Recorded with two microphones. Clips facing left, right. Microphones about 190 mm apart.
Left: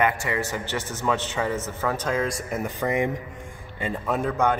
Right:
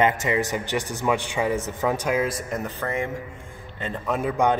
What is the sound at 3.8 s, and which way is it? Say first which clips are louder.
Speech: even; centre (ahead or behind).